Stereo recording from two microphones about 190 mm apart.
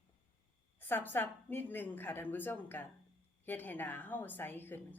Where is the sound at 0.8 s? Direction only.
10° left (ahead or behind).